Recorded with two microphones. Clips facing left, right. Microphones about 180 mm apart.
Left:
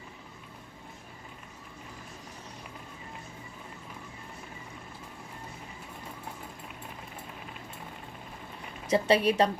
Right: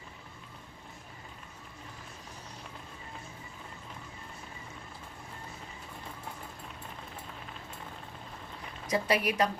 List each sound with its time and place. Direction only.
8.9 s a woman's voice: 30° left (ahead or behind)